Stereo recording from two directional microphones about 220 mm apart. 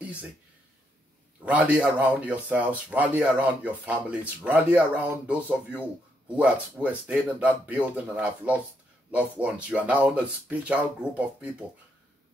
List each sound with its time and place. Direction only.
1.4 s speech: 5° right (ahead or behind)